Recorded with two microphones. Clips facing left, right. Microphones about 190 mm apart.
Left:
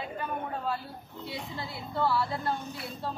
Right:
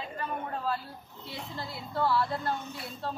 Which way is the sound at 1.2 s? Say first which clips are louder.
Left 1 dB; centre (ahead or behind).